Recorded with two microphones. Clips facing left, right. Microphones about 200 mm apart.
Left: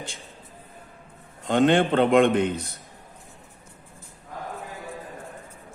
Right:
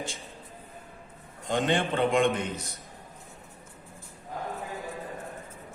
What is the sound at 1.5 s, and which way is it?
Speech, 60° left (ahead or behind).